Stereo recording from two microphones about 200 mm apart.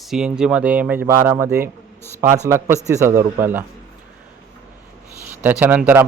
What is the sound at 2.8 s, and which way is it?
Speech, 15° right (ahead or behind).